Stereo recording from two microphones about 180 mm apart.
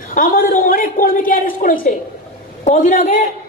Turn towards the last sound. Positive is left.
turn(degrees=50)  # may be behind; listen again after turning